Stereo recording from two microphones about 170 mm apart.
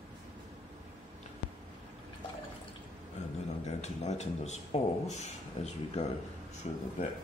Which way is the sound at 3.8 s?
40° left (ahead or behind).